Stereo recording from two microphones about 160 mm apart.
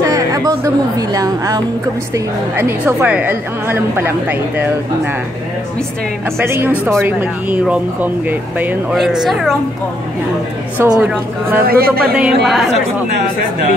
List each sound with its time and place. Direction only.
0.0 s a woman's voice: 20° right (ahead or behind)
6.3 s a woman's voice: 15° right (ahead or behind)
10.8 s a woman's voice: 10° right (ahead or behind)
11.6 s speech: 70° right (ahead or behind)
12.0 s speech: 5° right (ahead or behind)